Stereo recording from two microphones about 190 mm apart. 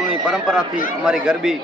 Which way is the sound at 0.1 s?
Centre (ahead or behind).